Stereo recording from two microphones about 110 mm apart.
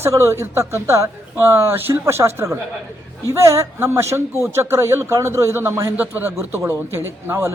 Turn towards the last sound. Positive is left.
turn(degrees=-25)  # may be behind; listen again after turning